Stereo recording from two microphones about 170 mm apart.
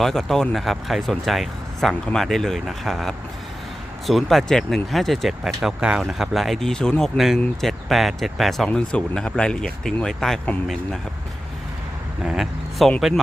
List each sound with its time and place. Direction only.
0.0 s speech: centre (ahead or behind)
12.2 s speech: 5° right (ahead or behind)